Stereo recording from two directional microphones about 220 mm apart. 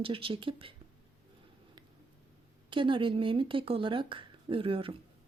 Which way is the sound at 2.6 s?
20° right (ahead or behind).